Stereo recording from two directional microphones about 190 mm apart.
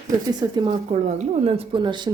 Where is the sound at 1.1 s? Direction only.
35° right (ahead or behind).